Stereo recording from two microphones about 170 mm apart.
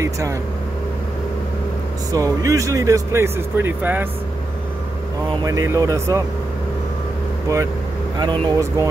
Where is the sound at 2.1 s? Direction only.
20° right (ahead or behind).